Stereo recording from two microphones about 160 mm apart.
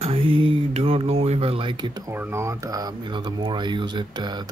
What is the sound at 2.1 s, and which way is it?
Speech, 15° right (ahead or behind).